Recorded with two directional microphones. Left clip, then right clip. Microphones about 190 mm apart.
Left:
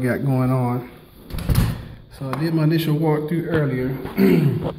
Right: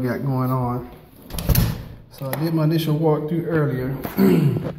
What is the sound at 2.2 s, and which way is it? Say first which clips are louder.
Speech: even; 30° left (ahead or behind).